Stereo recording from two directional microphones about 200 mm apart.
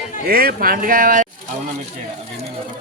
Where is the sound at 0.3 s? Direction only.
50° right (ahead or behind).